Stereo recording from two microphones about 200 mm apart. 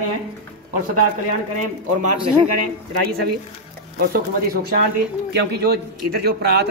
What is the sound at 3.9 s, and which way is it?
Speech, 50° right (ahead or behind).